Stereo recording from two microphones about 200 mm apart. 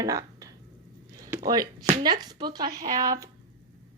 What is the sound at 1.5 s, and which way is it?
Speech, 20° right (ahead or behind).